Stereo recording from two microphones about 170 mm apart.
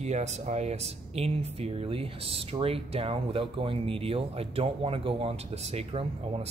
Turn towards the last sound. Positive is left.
turn(degrees=-40)  # may be behind; listen again after turning